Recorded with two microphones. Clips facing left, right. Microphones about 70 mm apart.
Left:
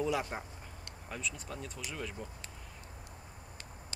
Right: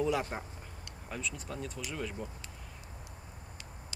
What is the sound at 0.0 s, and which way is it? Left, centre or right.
Speech, centre.